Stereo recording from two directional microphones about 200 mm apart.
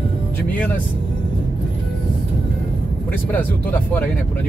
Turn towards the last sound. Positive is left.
turn(degrees=10)  # may be behind; listen again after turning